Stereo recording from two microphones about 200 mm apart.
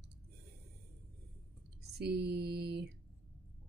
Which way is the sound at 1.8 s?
55° right (ahead or behind).